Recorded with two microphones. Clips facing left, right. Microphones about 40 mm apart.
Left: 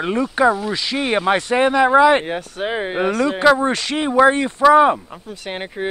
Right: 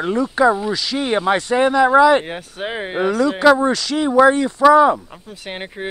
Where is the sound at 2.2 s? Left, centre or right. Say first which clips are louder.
Left 3 dB; centre.